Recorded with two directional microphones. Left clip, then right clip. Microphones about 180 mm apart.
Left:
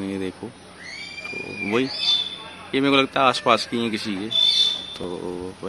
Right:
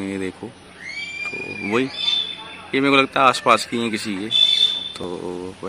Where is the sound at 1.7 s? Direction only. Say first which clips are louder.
Even; centre (ahead or behind).